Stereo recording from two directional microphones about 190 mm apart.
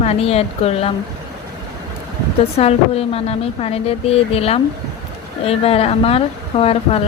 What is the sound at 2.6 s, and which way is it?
A woman's voice, 30° left (ahead or behind).